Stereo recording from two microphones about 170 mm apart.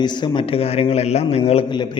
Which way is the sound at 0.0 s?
25° left (ahead or behind).